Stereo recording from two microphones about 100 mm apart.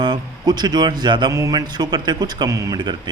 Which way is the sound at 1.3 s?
35° right (ahead or behind).